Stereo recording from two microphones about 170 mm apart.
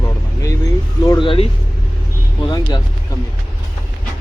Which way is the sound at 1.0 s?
25° left (ahead or behind).